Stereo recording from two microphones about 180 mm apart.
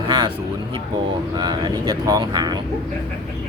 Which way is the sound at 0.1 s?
25° right (ahead or behind).